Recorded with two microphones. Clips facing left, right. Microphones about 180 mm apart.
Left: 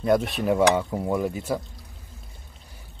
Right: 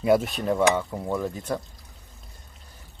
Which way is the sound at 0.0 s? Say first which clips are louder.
Even; 5° right (ahead or behind).